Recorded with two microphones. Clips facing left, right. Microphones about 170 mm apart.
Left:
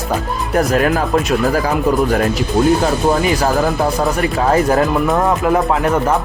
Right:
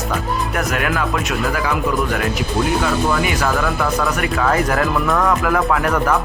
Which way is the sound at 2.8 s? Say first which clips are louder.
Left 4 dB; 35° left (ahead or behind).